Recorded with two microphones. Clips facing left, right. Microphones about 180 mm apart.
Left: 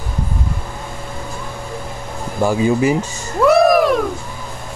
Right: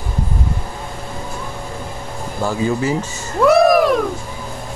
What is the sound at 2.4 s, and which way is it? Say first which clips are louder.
Speech: left 4 dB; 15° left (ahead or behind).